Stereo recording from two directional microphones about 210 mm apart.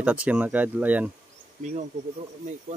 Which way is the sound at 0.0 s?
5° right (ahead or behind).